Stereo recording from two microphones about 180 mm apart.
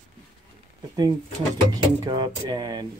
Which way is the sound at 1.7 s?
20° right (ahead or behind).